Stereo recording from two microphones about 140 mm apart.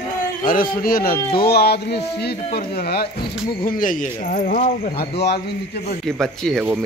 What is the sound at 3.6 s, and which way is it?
Speech, 75° left (ahead or behind).